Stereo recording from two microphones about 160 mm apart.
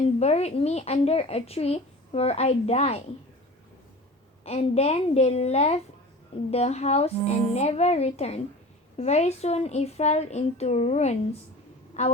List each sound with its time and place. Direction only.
0.2 s speech: 40° left (ahead or behind)
4.4 s a child's voice: 40° left (ahead or behind)
11.9 s a sound: 45° left (ahead or behind)